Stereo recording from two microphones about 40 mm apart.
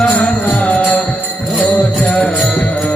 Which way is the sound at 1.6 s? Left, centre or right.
Left.